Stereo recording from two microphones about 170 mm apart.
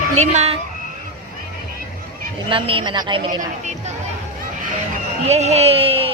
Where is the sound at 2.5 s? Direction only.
30° right (ahead or behind).